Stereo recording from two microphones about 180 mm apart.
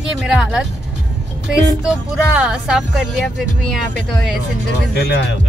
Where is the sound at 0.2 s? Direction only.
5° right (ahead or behind).